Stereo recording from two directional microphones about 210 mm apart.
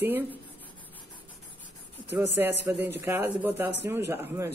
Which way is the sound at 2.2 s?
10° right (ahead or behind).